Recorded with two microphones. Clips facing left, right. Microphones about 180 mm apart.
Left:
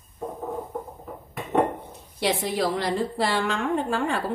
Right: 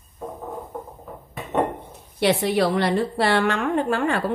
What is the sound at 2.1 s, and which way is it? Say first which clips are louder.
A woman's voice: right 5 dB; 70° right (ahead or behind).